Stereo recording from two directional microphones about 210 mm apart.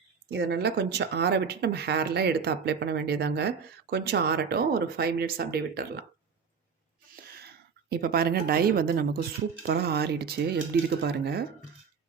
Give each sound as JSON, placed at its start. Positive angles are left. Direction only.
{"t": 0.3, "sound": "speech", "side_deg": -50}
{"t": 7.9, "sound": "speech", "side_deg": -45}